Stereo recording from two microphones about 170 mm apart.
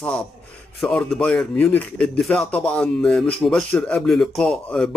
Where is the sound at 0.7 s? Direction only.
5° left (ahead or behind).